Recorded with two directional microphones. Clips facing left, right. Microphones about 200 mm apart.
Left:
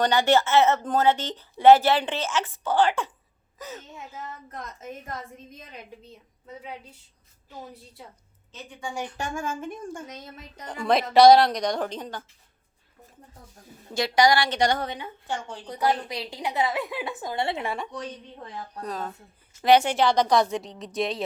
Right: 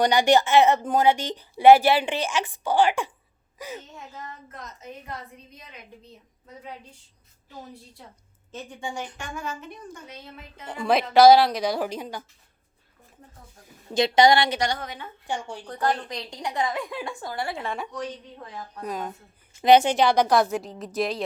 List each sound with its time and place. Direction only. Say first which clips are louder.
0.0 s speech: right 2 dB; 15° right (ahead or behind)
5.1 s a woman's voice: left 1 dB; 45° left (ahead or behind)
9.1 s a woman's voice: left 4 dB; 45° left (ahead or behind)
10.7 s a woman's voice: even; centre (ahead or behind)
13.9 s a woman's voice: right 3 dB; 20° right (ahead or behind)
15.6 s a woman's voice: left 2 dB; 10° left (ahead or behind)
17.2 s speech: left 4 dB; 25° left (ahead or behind)
18.9 s a woman's voice: right 2 dB; 15° right (ahead or behind)